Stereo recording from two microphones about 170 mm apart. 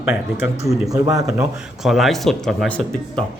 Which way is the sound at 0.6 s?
Centre (ahead or behind).